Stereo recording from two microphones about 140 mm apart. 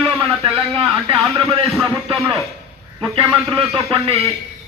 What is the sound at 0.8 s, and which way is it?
Speech, 35° right (ahead or behind).